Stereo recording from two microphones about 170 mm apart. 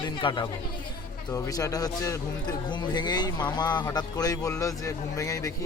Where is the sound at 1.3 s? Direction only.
20° left (ahead or behind).